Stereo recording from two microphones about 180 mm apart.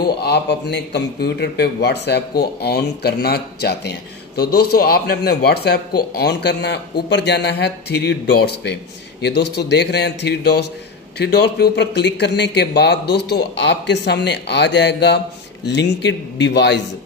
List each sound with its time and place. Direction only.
0.0 s a man's voice: 65° left (ahead or behind)